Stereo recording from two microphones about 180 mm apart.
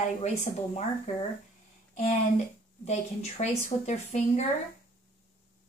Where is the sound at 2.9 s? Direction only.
40° left (ahead or behind).